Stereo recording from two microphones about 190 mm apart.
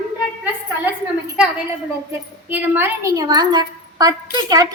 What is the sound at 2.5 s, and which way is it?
A woman's voice, 10° right (ahead or behind).